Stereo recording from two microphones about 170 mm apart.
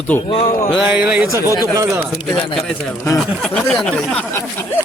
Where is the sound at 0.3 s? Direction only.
35° left (ahead or behind).